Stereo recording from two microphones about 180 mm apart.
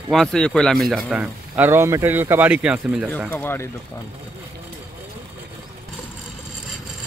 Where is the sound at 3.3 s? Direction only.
10° left (ahead or behind).